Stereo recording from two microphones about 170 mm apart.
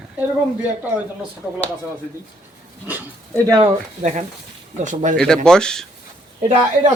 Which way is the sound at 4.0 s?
40° right (ahead or behind).